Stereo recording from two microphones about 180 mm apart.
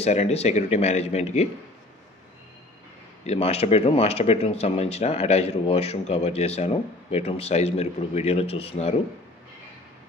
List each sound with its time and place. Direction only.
0.0 s speech: 35° left (ahead or behind)
3.3 s speech: 35° left (ahead or behind)